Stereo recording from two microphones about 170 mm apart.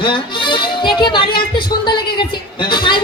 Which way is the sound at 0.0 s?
30° left (ahead or behind).